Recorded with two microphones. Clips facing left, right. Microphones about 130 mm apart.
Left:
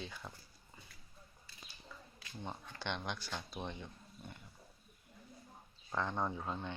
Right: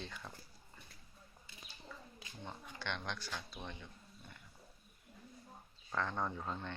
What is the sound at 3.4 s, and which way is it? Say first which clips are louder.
Speech: left 4 dB; 25° left (ahead or behind).